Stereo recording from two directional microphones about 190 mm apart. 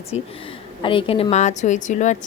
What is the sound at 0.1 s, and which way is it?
A woman's voice, 30° left (ahead or behind).